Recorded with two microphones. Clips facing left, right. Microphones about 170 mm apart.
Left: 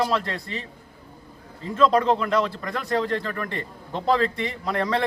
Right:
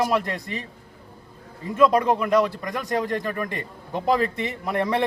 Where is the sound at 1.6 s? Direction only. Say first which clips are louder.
Right 1 dB; 15° right (ahead or behind).